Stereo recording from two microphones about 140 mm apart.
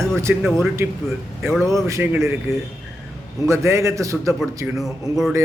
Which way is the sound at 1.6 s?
20° right (ahead or behind).